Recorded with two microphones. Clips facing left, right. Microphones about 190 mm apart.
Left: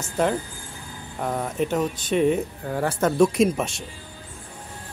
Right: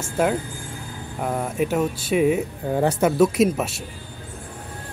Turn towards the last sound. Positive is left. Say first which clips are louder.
# right 1 dB
turn(degrees=-5)  # may be behind; listen again after turning